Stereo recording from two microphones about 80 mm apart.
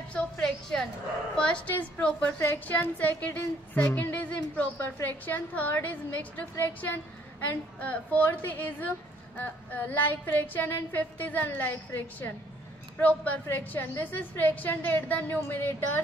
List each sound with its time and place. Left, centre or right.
0.1 s music: centre
1.3 s a woman's voice: centre
2.3 s a woman's voice: left
7.4 s a woman's voice: left